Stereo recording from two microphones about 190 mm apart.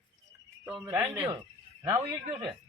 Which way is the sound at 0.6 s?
5° right (ahead or behind).